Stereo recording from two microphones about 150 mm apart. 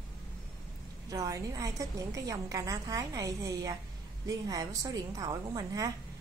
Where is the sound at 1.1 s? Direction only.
20° right (ahead or behind).